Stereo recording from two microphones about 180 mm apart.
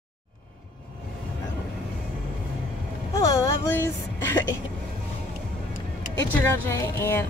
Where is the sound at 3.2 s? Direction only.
20° left (ahead or behind).